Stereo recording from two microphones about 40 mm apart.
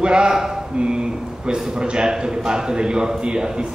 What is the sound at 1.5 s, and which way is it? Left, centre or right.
A man's voice, right.